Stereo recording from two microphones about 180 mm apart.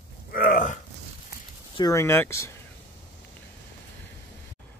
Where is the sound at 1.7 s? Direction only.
20° left (ahead or behind).